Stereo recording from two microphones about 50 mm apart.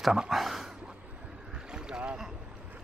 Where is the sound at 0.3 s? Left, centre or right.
Centre.